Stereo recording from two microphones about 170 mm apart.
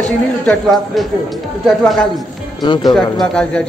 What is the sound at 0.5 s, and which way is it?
Speech, centre (ahead or behind).